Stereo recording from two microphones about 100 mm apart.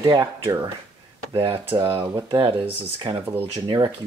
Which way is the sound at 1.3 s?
60° right (ahead or behind).